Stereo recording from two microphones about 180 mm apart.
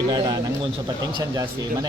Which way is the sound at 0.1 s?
25° right (ahead or behind).